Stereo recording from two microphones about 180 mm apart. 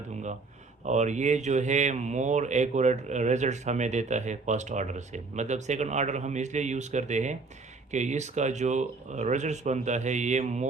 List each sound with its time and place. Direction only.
0.9 s speech: 40° right (ahead or behind)